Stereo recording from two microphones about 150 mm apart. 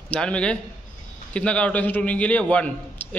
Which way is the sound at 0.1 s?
5° left (ahead or behind).